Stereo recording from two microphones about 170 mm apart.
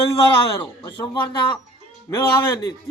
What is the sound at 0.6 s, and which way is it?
A man's voice, 25° left (ahead or behind).